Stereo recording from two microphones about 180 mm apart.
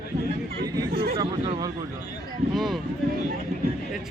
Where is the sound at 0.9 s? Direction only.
60° right (ahead or behind).